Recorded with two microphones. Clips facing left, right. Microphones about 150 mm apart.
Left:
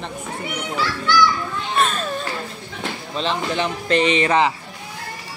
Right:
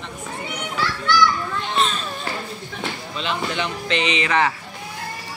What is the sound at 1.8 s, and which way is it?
Children playing, 50° left (ahead or behind).